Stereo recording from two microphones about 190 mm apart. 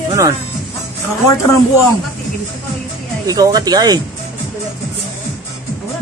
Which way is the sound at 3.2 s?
20° right (ahead or behind).